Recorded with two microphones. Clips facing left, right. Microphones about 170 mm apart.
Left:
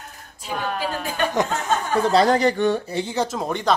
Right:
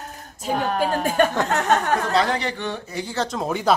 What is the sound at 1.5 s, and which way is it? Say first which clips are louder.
Speech: right 4 dB; 70° right (ahead or behind).